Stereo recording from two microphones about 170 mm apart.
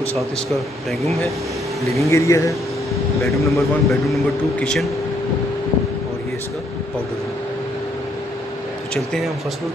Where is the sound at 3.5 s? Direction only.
Centre (ahead or behind).